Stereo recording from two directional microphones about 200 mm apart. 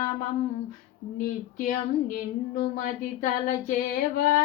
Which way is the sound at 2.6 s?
40° left (ahead or behind).